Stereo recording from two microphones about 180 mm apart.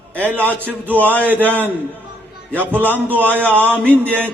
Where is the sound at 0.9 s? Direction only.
10° left (ahead or behind).